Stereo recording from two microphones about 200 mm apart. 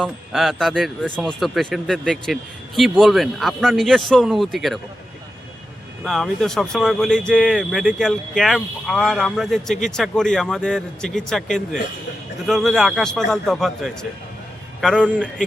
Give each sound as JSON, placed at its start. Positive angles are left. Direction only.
{"t": 0.0, "sound": "speech", "side_deg": 0}
{"t": 6.1, "sound": "speech", "side_deg": 0}